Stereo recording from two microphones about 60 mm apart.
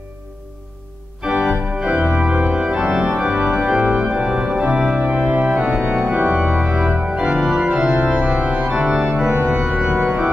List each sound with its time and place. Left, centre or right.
1.2 s organ: centre
6.1 s organ: right
6.4 s organ: centre
8.6 s organ: centre